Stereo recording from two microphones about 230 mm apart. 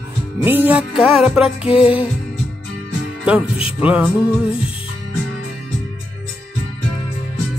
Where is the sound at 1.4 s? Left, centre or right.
Left.